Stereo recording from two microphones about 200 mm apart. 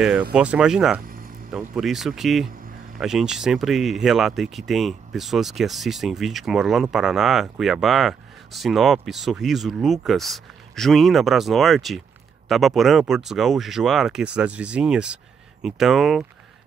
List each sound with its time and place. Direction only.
0.3 s speech: 5° right (ahead or behind)
1.0 s music: 45° right (ahead or behind)
1.5 s speech: centre (ahead or behind)